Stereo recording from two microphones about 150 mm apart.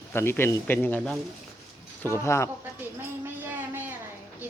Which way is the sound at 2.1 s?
20° left (ahead or behind).